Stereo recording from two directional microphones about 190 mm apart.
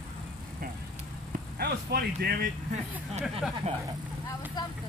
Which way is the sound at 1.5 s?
55° right (ahead or behind).